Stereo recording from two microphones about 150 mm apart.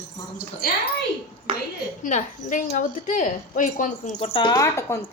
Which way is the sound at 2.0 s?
55° left (ahead or behind).